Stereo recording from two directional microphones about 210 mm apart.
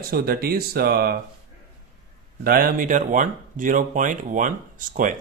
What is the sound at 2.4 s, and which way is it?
Speech, 45° right (ahead or behind).